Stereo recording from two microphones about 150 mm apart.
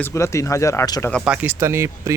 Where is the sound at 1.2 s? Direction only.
10° right (ahead or behind).